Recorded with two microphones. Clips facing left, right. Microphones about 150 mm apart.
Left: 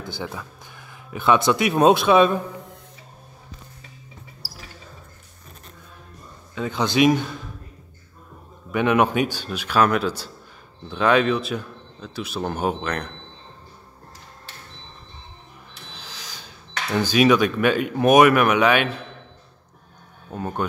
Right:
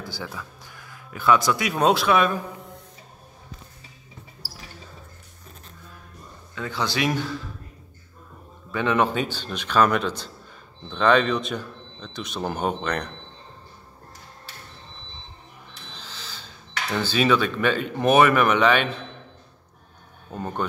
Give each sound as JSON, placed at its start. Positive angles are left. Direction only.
{"t": 0.0, "sound": "speech", "side_deg": 20}
{"t": 6.5, "sound": "speech", "side_deg": 20}
{"t": 8.7, "sound": "a man's voice", "side_deg": 15}
{"t": 15.9, "sound": "speech", "side_deg": 10}
{"t": 20.2, "sound": "speech", "side_deg": 5}